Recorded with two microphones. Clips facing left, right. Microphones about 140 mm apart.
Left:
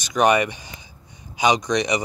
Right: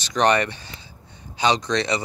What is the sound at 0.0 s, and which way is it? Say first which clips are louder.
Speech: left 1 dB; 10° left (ahead or behind).